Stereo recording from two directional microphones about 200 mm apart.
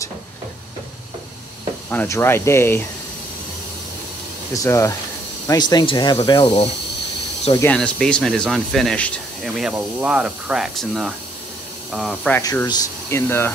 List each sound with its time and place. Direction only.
1.9 s speech: 10° left (ahead or behind)
4.6 s speech: 15° left (ahead or behind)
7.5 s speech: 5° left (ahead or behind)
12.4 s speech: 15° left (ahead or behind)